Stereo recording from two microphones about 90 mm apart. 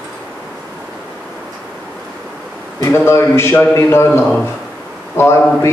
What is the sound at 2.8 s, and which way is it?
Speech, 25° left (ahead or behind).